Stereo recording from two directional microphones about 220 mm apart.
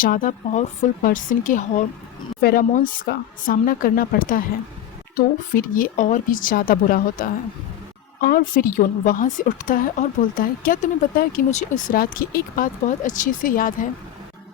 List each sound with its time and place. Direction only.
0.0 s a woman's voice: 40° left (ahead or behind)